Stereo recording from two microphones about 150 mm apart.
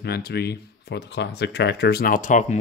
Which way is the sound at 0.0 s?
90° left.